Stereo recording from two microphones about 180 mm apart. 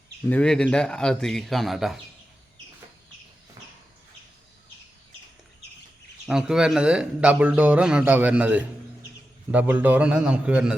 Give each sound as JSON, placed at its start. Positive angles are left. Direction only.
{"t": 0.3, "sound": "a man's voice", "side_deg": 5}
{"t": 6.2, "sound": "speech", "side_deg": -5}